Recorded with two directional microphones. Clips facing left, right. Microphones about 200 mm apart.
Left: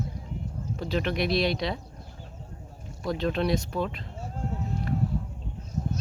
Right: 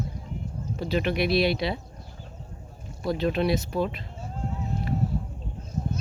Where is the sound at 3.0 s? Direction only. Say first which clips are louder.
Right 2 dB; 5° right (ahead or behind).